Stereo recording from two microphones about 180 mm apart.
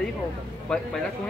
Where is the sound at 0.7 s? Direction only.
5° left (ahead or behind).